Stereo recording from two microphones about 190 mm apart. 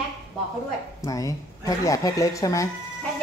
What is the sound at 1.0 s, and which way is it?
Speech, 15° left (ahead or behind).